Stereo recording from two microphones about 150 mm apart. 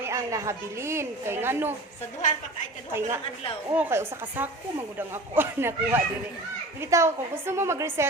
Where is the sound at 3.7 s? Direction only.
15° right (ahead or behind).